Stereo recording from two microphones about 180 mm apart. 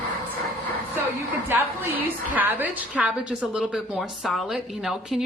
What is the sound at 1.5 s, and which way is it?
A woman's voice, 10° right (ahead or behind).